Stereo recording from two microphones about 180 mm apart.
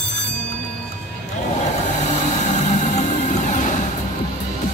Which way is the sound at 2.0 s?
40° left (ahead or behind).